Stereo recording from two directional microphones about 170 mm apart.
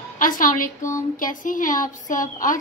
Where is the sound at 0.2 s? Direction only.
50° left (ahead or behind).